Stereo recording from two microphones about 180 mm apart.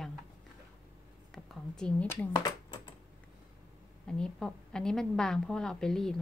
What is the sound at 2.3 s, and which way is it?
Speech, 20° left (ahead or behind).